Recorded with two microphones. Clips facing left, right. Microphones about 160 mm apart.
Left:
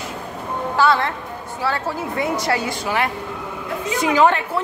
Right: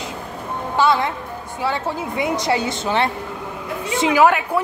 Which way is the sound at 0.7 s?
15° right (ahead or behind).